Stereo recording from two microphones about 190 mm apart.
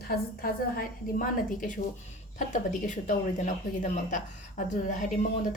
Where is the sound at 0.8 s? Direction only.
45° left (ahead or behind).